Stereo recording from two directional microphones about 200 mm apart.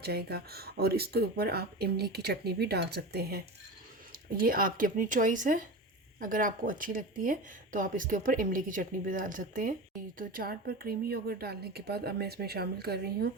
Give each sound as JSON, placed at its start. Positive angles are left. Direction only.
{"t": 0.0, "sound": "speech", "side_deg": -55}